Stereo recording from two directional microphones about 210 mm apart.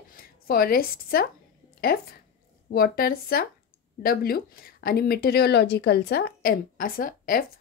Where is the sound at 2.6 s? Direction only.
45° left (ahead or behind).